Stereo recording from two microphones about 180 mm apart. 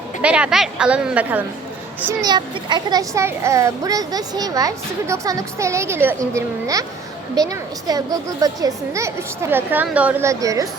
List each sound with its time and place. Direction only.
0.2 s a child's voice: 5° right (ahead or behind)
2.2 s a child's voice: 25° right (ahead or behind)